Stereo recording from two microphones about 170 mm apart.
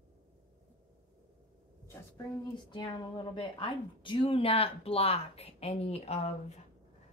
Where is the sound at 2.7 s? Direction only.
30° left (ahead or behind).